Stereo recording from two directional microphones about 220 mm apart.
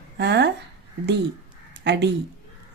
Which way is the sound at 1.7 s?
50° right (ahead or behind).